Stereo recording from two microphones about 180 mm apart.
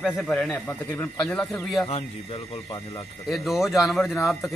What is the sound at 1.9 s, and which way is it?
Speech, 35° left (ahead or behind).